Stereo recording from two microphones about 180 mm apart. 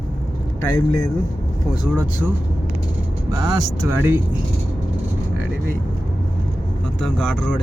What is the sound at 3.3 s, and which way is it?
Speech, 20° right (ahead or behind).